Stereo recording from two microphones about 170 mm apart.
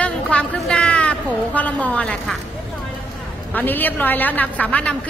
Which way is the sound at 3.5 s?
10° left (ahead or behind).